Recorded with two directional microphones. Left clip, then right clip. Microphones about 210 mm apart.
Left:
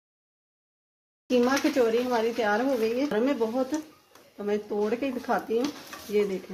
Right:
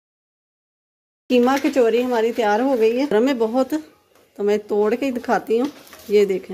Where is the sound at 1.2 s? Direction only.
50° right (ahead or behind).